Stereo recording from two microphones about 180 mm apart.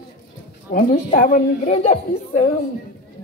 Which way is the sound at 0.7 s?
55° left (ahead or behind).